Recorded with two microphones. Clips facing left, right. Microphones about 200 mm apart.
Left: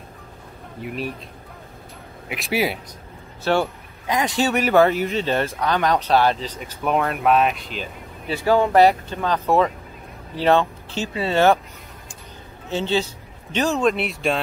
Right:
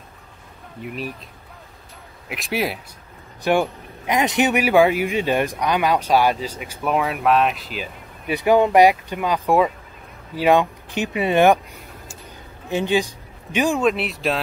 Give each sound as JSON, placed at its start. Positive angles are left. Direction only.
{"t": 0.7, "sound": "speech", "side_deg": 0}
{"t": 2.2, "sound": "speech", "side_deg": 0}
{"t": 3.5, "sound": "speech", "side_deg": -15}
{"t": 8.3, "sound": "speech", "side_deg": -20}
{"t": 12.6, "sound": "a man's voice", "side_deg": -15}